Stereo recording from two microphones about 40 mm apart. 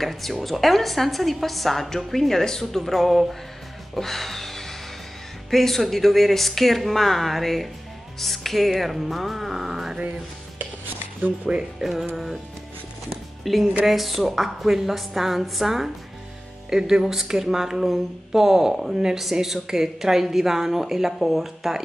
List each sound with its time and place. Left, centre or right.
0.0 s a woman's voice: centre
3.9 s music: centre
5.5 s a woman's voice: centre
11.5 s speech: centre
13.4 s a woman's voice: centre